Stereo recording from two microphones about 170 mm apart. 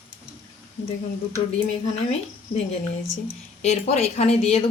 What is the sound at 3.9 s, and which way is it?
Speech, 40° left (ahead or behind).